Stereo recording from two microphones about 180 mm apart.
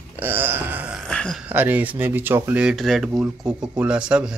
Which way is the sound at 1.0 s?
5° left (ahead or behind).